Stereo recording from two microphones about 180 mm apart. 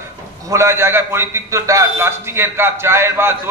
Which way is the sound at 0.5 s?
15° right (ahead or behind).